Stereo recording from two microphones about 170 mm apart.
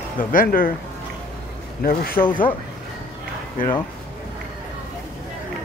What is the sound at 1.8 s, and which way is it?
Speech, 60° left (ahead or behind).